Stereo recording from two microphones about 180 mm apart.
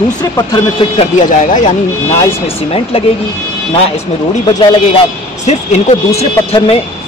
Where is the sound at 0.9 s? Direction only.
45° left (ahead or behind).